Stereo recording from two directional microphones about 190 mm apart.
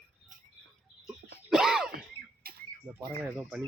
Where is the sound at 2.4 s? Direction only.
50° right (ahead or behind).